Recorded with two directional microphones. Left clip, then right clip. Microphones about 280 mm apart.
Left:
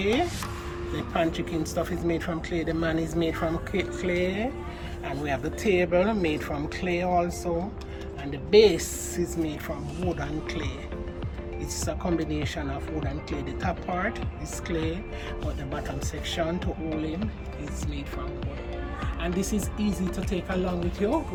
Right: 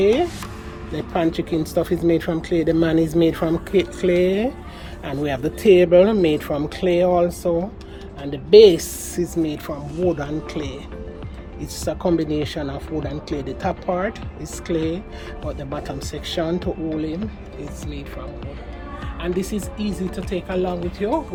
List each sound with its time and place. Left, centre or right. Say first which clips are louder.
0.0 s speech: right 8 dB; right
16.2 s speech: right 6 dB; right
19.2 s speech: right 6 dB; centre